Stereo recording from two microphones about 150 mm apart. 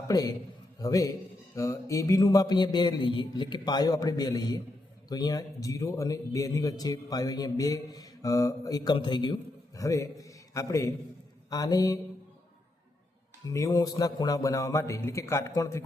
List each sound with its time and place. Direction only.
0.1 s a man's voice: 25° left (ahead or behind)
13.5 s a man's voice: 20° left (ahead or behind)